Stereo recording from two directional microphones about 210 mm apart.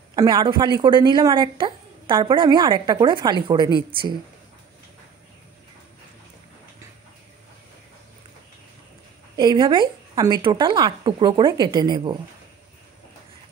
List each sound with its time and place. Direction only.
0.1 s a woman's voice: 20° right (ahead or behind)
9.4 s a woman's voice: 20° right (ahead or behind)